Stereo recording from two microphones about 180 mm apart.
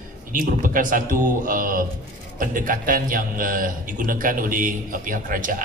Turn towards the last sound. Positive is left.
turn(degrees=-50)  # may be behind; listen again after turning